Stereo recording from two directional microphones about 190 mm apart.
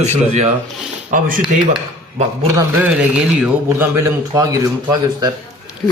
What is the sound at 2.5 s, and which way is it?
A man's voice, 10° right (ahead or behind).